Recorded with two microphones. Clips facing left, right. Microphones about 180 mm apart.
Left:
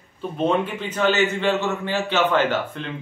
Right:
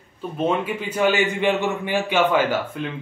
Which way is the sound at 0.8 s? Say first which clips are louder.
Even; 10° right (ahead or behind).